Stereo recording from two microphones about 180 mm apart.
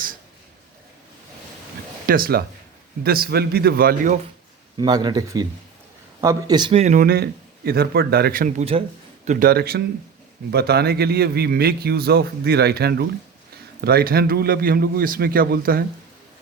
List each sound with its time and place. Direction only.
2.0 s a man's voice: 55° right (ahead or behind)
4.8 s speech: 20° right (ahead or behind); by 8.8 s 40° right (ahead or behind)
9.2 s a man's voice: 50° right (ahead or behind)